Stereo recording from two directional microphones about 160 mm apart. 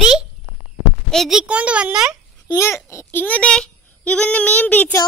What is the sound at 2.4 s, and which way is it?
A child's voice, 20° left (ahead or behind).